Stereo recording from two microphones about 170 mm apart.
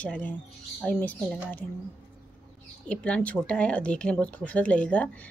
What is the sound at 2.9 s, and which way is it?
Speech, 5° left (ahead or behind).